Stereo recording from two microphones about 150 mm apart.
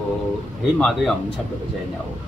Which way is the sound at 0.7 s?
5° left (ahead or behind).